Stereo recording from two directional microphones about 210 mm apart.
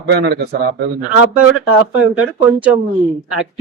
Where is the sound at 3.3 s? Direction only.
5° right (ahead or behind).